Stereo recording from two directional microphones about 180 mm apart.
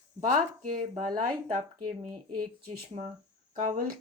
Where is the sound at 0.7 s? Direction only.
50° right (ahead or behind).